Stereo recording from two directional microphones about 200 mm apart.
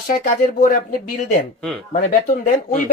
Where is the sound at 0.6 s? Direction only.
45° left (ahead or behind).